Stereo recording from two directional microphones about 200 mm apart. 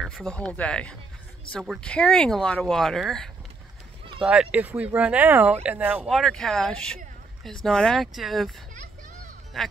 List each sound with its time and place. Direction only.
0.0 s speech: 5° left (ahead or behind)